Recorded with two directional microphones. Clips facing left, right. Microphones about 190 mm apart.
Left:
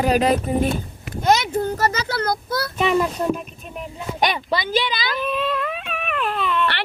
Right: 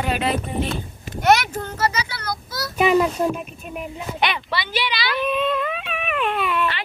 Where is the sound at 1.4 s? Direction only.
30° left (ahead or behind).